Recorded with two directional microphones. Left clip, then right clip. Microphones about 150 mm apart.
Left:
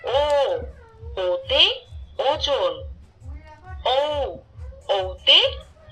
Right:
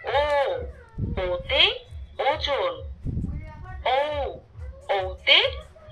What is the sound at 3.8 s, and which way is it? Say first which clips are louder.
A woman's voice: left 3 dB; 30° left (ahead or behind).